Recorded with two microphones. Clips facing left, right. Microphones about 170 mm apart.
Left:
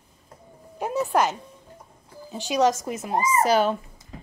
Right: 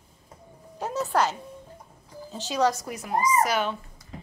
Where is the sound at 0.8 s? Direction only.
15° left (ahead or behind).